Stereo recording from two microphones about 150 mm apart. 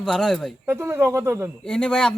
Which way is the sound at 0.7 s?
15° right (ahead or behind).